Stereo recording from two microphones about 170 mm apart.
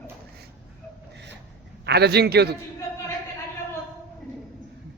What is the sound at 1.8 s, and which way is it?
Speech, 75° right (ahead or behind).